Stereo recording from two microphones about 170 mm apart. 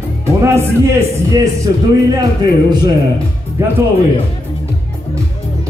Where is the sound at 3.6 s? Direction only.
15° right (ahead or behind).